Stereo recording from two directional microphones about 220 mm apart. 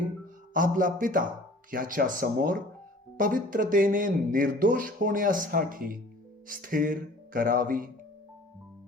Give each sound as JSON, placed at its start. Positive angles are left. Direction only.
{"t": 0.5, "sound": "speech", "side_deg": -40}